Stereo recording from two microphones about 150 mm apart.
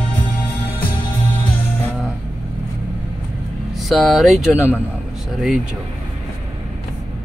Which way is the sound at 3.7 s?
Centre (ahead or behind).